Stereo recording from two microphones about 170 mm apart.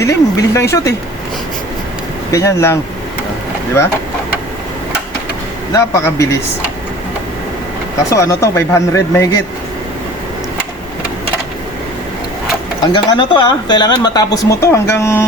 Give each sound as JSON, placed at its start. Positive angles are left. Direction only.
{"t": 0.0, "sound": "speech", "side_deg": 15}
{"t": 2.3, "sound": "speech", "side_deg": 15}
{"t": 5.7, "sound": "speech", "side_deg": 20}
{"t": 8.1, "sound": "speech", "side_deg": 15}
{"t": 12.8, "sound": "speech", "side_deg": 25}